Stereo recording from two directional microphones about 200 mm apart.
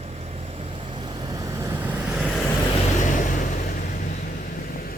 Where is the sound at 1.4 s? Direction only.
15° right (ahead or behind).